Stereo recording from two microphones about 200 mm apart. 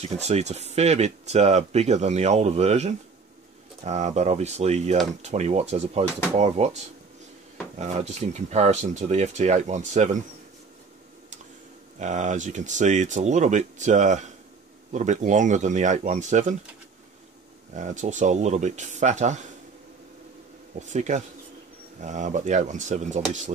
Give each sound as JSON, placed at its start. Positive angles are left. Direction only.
{"t": 0.0, "sound": "speech", "side_deg": -30}
{"t": 12.0, "sound": "speech", "side_deg": -35}
{"t": 17.7, "sound": "speech", "side_deg": -35}
{"t": 20.9, "sound": "speech", "side_deg": -35}